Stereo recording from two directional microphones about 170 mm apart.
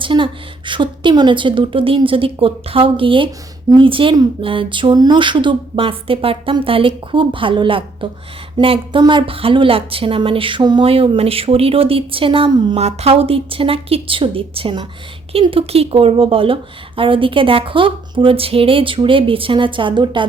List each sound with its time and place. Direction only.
0.0 s a woman's voice: 30° right (ahead or behind)